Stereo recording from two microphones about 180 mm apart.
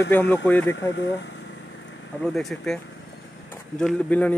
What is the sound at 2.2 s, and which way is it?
Speech, 5° left (ahead or behind).